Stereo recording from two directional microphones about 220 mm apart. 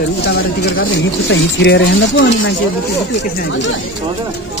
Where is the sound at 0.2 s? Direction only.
50° left (ahead or behind).